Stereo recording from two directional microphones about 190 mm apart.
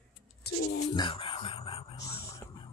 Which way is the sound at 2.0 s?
20° left (ahead or behind).